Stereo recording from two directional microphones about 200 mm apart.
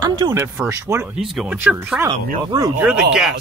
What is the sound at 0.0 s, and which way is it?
Speech, 15° right (ahead or behind).